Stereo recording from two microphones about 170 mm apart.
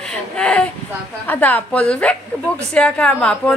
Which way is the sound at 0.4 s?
5° left (ahead or behind).